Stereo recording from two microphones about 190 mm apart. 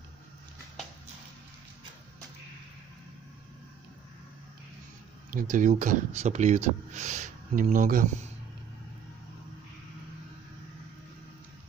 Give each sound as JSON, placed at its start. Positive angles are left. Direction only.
{"t": 5.3, "sound": "speech", "side_deg": -40}